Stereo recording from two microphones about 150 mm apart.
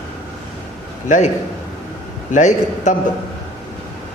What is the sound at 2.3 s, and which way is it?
Speech, 55° left (ahead or behind).